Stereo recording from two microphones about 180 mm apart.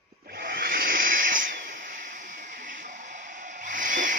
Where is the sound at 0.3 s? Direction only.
55° right (ahead or behind).